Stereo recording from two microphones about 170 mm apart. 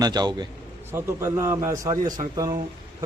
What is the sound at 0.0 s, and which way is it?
A man's voice, 25° right (ahead or behind).